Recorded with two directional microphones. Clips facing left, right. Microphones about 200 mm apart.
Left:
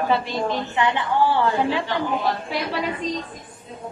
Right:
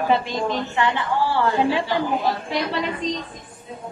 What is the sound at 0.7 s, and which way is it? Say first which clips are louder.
Speech: even; 20° left (ahead or behind).